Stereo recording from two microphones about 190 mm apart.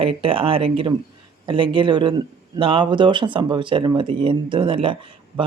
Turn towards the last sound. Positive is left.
turn(degrees=-25)  # may be behind; listen again after turning